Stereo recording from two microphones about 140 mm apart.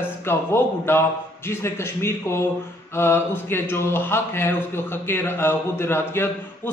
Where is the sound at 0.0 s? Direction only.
15° left (ahead or behind).